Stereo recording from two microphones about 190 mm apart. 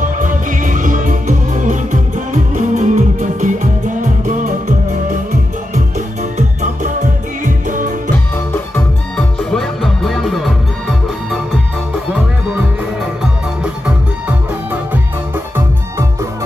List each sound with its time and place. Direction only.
0.0 s music: 45° right (ahead or behind)
5.9 s music: 40° right (ahead or behind)
8.7 s music: 5° left (ahead or behind)
14.9 s music: 10° right (ahead or behind)